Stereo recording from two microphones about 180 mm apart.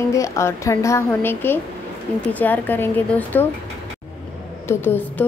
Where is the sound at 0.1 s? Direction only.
15° left (ahead or behind).